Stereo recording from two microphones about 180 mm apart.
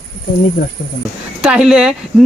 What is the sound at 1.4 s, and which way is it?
Speech, 5° right (ahead or behind).